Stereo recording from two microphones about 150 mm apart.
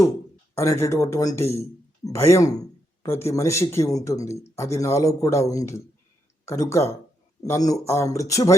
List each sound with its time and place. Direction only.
0.5 s speech: 20° left (ahead or behind)